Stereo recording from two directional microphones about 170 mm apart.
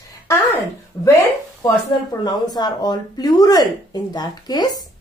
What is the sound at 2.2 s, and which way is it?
A woman's voice, 25° left (ahead or behind).